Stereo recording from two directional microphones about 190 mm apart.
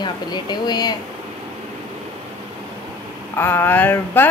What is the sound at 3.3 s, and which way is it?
Speech, 10° left (ahead or behind).